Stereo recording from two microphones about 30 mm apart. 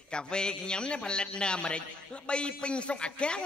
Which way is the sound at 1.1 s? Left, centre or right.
Left.